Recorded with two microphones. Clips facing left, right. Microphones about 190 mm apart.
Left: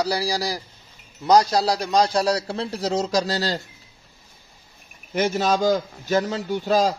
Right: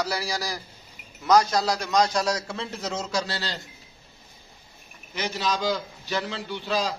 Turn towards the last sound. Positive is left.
turn(degrees=40)  # may be behind; listen again after turning